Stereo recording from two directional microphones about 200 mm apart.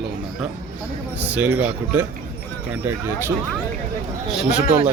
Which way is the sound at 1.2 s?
5° right (ahead or behind).